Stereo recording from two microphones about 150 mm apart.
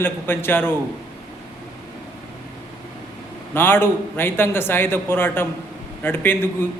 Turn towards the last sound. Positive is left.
turn(degrees=15)  # may be behind; listen again after turning